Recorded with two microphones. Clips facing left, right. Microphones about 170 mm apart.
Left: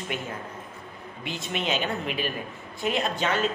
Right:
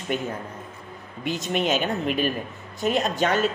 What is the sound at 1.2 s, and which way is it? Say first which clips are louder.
Speech: right 6 dB; 45° right (ahead or behind).